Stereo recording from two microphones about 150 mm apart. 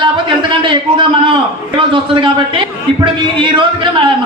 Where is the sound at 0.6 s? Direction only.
35° right (ahead or behind).